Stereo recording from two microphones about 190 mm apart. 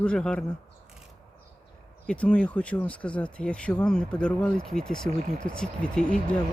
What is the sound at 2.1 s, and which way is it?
Speech, 5° left (ahead or behind).